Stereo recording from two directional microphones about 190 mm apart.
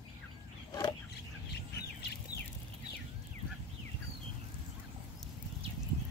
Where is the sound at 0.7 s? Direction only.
20° left (ahead or behind).